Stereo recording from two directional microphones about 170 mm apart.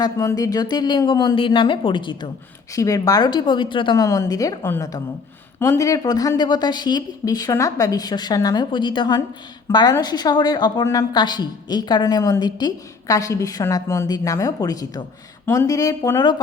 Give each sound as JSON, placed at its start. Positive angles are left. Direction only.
{"t": 0.0, "sound": "a woman's voice", "side_deg": 20}